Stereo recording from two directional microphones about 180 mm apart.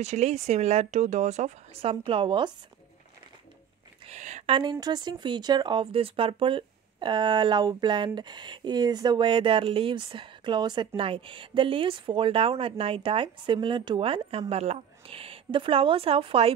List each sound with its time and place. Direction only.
0.0 s speech: 40° right (ahead or behind)
4.0 s a sound: 40° right (ahead or behind)
4.6 s speech: 25° right (ahead or behind)